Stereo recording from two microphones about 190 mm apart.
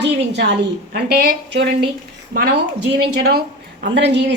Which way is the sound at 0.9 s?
55° right (ahead or behind).